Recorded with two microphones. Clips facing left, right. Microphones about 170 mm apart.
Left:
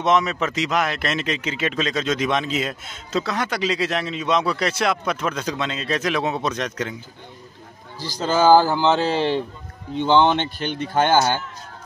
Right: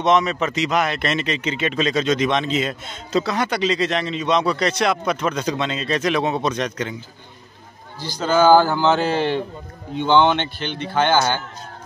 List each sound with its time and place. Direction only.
0.0 s speech: 5° left (ahead or behind)
8.0 s speech: 35° left (ahead or behind)
9.9 s speech: centre (ahead or behind)
10.6 s speech: 45° left (ahead or behind)